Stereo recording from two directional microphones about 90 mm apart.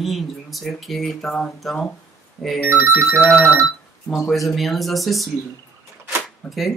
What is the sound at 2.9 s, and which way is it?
Speech, 10° left (ahead or behind).